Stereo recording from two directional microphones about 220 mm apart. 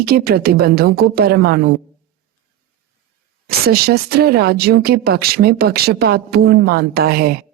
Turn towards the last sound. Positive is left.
turn(degrees=-45)  # may be behind; listen again after turning